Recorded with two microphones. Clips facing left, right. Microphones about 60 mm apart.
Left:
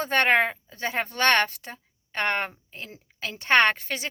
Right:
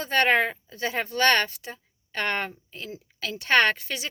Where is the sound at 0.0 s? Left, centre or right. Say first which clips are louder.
Left 1 dB; left.